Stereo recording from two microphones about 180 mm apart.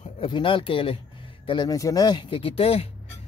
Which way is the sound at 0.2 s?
30° left (ahead or behind).